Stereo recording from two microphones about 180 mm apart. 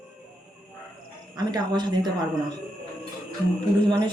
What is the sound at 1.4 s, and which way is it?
Speech, 25° right (ahead or behind).